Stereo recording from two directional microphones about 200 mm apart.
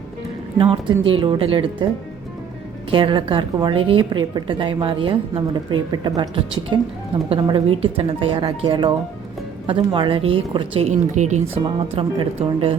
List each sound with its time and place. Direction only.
0.6 s speech: 25° right (ahead or behind)
2.9 s speech: 25° right (ahead or behind)